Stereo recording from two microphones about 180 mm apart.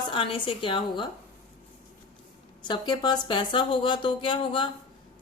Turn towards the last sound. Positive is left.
turn(degrees=30)  # may be behind; listen again after turning